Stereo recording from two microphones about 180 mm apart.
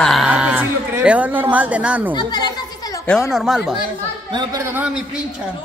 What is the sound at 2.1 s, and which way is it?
Children playing, 25° left (ahead or behind).